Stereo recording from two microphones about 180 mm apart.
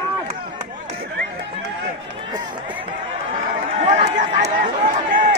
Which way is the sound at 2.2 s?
25° right (ahead or behind).